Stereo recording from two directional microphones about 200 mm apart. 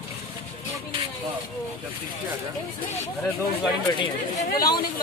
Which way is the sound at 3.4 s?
20° left (ahead or behind).